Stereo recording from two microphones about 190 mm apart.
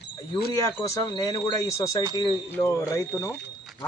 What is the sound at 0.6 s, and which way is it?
Speech, 20° left (ahead or behind).